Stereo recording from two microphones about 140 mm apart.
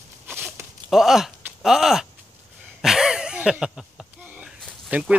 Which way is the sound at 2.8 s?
5° right (ahead or behind).